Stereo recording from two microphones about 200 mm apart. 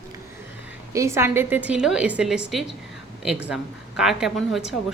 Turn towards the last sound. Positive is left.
turn(degrees=0)  # may be behind; listen again after turning